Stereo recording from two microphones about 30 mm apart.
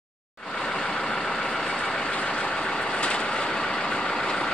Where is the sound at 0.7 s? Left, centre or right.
Left.